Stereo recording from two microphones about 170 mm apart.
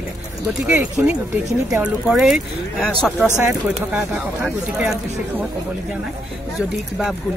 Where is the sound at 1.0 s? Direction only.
10° right (ahead or behind).